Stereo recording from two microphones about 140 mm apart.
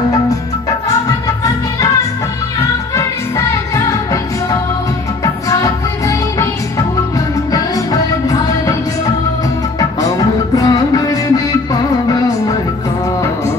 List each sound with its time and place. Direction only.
0.8 s music: 25° left (ahead or behind)